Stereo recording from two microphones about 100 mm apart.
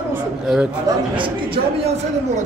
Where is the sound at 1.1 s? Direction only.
60° right (ahead or behind); by 2.0 s 75° right (ahead or behind).